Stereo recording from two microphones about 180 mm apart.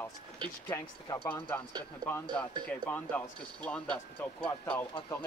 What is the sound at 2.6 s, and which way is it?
Speech, 10° left (ahead or behind).